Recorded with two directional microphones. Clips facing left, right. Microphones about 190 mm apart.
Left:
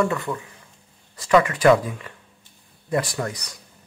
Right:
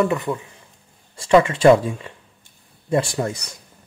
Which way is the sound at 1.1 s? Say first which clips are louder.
Right 3 dB; 25° right (ahead or behind).